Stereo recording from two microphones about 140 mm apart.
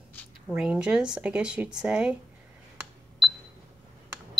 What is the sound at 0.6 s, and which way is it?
A woman's voice, 5° right (ahead or behind).